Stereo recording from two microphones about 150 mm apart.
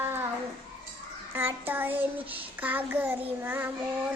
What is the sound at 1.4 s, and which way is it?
Child singing, 15° right (ahead or behind).